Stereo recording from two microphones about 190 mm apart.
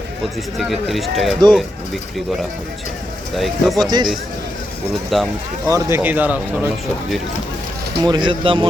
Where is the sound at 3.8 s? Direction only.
20° right (ahead or behind).